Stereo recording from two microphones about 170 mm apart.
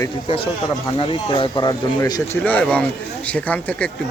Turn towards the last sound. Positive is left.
turn(degrees=10)  # may be behind; listen again after turning